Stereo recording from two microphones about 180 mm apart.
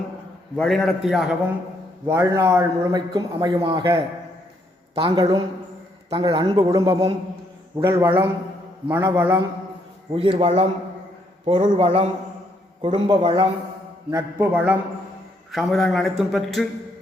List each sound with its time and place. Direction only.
0.5 s a man's voice: centre (ahead or behind)
2.0 s a man's voice: 15° right (ahead or behind)
10.2 s a man's voice: 30° right (ahead or behind)
14.1 s a man's voice: 15° right (ahead or behind); by 16.6 s centre (ahead or behind)